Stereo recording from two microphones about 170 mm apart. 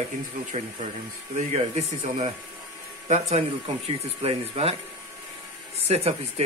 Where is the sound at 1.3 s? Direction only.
40° right (ahead or behind).